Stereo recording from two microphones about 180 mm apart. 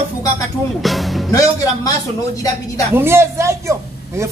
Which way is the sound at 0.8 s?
Centre (ahead or behind).